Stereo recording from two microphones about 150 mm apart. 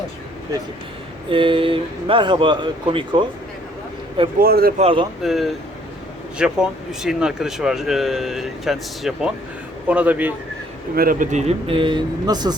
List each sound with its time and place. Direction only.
1.3 s speech: 35° right (ahead or behind)
4.4 s speech: 85° right
4.8 s speech: 35° right (ahead or behind)
5.2 s a man's voice: centre (ahead or behind)
10.9 s speech: 70° right (ahead or behind); by 12.5 s 25° right (ahead or behind)